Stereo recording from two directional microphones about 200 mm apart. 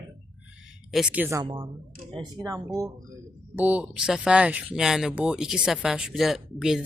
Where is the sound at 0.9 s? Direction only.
5° right (ahead or behind).